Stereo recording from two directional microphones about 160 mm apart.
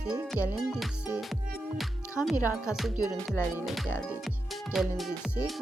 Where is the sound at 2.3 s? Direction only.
20° left (ahead or behind).